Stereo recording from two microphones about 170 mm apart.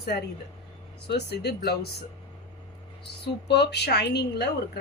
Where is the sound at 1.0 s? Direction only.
75° left (ahead or behind).